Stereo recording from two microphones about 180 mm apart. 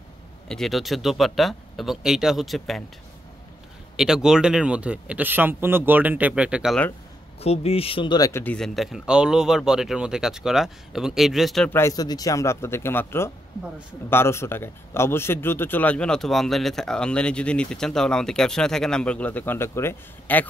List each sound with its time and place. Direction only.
0.5 s a man's voice: centre (ahead or behind)
3.9 s speech: 5° right (ahead or behind)
7.3 s speech: 35° left (ahead or behind); by 8.5 s 15° left (ahead or behind)
8.5 s a man's voice: centre (ahead or behind)
11.7 s a man's voice: 20° left (ahead or behind)